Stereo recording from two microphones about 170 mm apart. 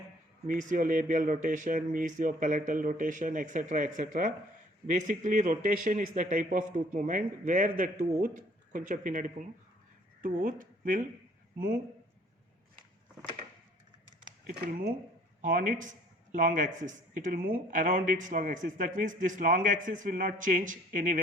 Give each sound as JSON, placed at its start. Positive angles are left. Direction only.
{"t": 0.4, "sound": "a man's voice", "side_deg": -50}
{"t": 14.6, "sound": "speech", "side_deg": -60}
{"t": 15.4, "sound": "a man's voice", "side_deg": -50}